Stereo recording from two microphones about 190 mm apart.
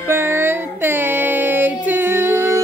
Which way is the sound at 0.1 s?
15° right (ahead or behind).